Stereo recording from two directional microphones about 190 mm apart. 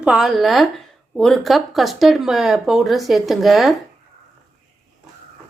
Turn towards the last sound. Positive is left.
turn(degrees=0)  # may be behind; listen again after turning